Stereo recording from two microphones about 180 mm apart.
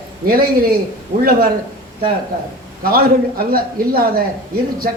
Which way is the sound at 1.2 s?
55° right (ahead or behind).